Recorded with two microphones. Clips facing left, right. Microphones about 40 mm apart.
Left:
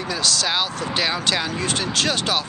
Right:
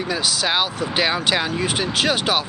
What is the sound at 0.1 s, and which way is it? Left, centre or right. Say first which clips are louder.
Speech: right 1 dB; centre.